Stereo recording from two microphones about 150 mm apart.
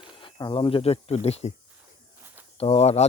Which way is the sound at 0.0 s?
35° left (ahead or behind).